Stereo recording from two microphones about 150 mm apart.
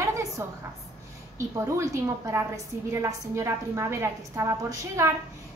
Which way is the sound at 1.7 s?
20° right (ahead or behind).